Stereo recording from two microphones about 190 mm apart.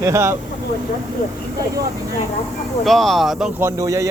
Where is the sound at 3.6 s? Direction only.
15° right (ahead or behind).